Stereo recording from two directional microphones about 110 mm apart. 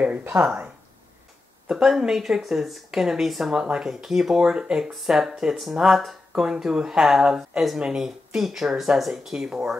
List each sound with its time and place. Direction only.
0.0 s speech: 15° right (ahead or behind)
1.7 s speech: 5° right (ahead or behind)